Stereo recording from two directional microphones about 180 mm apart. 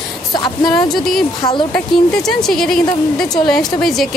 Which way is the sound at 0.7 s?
Centre (ahead or behind).